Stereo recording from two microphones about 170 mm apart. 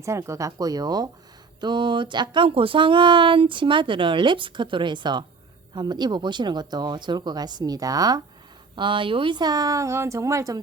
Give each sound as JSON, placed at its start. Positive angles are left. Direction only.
{"t": 0.0, "sound": "speech", "side_deg": -15}